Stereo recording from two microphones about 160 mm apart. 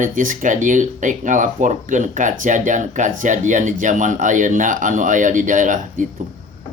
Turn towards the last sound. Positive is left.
turn(degrees=-55)  # may be behind; listen again after turning